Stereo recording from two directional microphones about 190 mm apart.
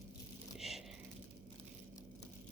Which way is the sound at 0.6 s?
Centre (ahead or behind).